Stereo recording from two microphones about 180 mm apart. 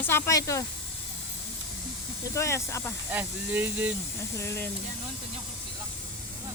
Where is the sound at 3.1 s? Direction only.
10° right (ahead or behind).